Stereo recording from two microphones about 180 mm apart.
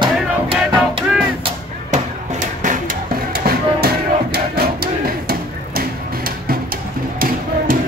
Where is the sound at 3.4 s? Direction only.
60° right (ahead or behind).